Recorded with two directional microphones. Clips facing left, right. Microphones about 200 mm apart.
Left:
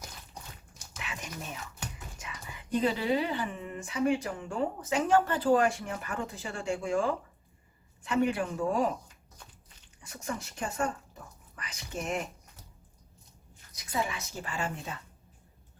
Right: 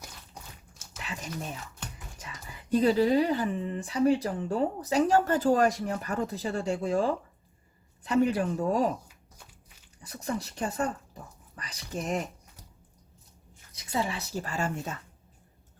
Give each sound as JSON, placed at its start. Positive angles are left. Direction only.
{"t": 0.9, "sound": "dog", "side_deg": -35}
{"t": 2.1, "sound": "speech", "side_deg": -35}
{"t": 9.0, "sound": "a sound", "side_deg": -10}
{"t": 10.0, "sound": "speech", "side_deg": -35}
{"t": 13.7, "sound": "speech", "side_deg": -30}